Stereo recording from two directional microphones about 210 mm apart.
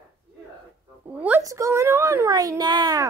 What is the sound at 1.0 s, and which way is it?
A child's voice, 5° right (ahead or behind).